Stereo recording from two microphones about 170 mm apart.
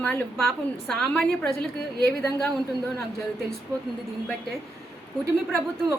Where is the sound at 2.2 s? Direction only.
15° left (ahead or behind).